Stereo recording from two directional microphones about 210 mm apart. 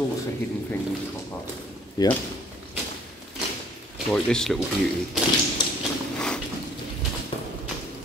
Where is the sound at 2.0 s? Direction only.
20° left (ahead or behind).